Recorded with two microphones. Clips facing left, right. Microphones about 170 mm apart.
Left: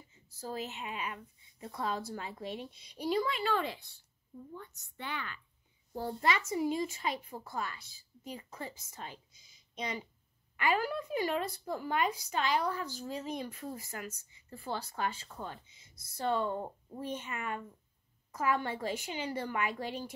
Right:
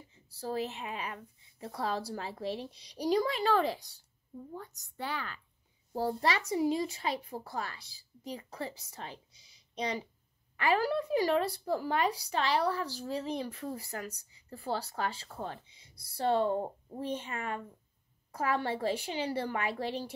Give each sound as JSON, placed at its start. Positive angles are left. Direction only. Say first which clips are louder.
{"t": 0.3, "sound": "speech", "louder": "right 5 dB", "side_deg": -35}